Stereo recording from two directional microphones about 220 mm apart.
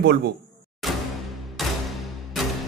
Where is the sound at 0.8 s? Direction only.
Centre (ahead or behind).